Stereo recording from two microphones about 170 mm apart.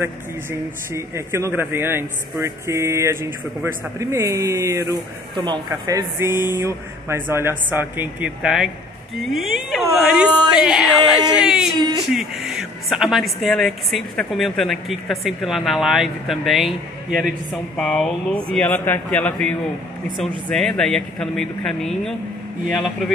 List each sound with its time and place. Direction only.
0.0 s a woman's voice: 15° right (ahead or behind)
11.7 s speech: 25° right (ahead or behind)
12.1 s a woman's voice: centre (ahead or behind)